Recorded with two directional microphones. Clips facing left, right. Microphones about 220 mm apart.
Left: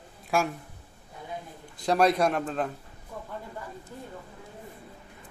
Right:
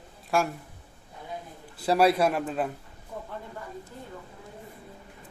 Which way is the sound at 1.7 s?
5° right (ahead or behind).